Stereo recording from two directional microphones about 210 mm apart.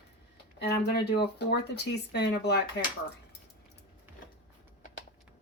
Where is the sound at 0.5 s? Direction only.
50° left (ahead or behind).